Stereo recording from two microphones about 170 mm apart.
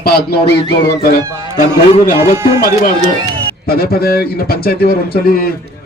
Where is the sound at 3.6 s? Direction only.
65° left (ahead or behind).